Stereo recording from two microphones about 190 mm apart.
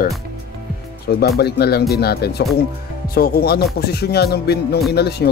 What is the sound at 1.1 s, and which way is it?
Speech, 60° left (ahead or behind).